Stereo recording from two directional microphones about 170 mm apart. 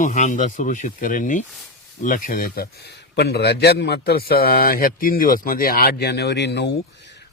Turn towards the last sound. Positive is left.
turn(degrees=80)